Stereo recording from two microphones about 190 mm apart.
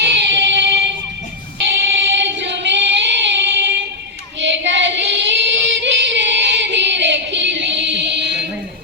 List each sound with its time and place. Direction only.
0.0 s music: 70° right (ahead or behind)
1.5 s singing: 70° right (ahead or behind)
4.4 s female singing: 70° right (ahead or behind)